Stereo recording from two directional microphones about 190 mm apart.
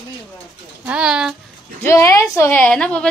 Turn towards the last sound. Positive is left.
turn(degrees=5)  # may be behind; listen again after turning